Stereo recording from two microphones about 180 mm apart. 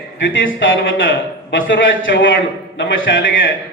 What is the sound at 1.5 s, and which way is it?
Speech, 90° left.